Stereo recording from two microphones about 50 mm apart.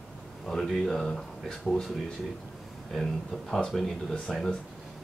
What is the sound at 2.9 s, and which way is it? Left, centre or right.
Speech, centre.